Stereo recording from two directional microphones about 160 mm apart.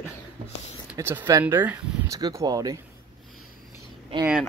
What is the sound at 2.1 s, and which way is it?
Speech, 25° right (ahead or behind).